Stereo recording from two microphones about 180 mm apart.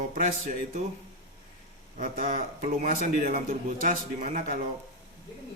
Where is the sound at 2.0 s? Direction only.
50° right (ahead or behind).